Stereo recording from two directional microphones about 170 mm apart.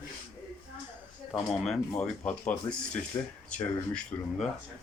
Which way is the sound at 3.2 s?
20° left (ahead or behind).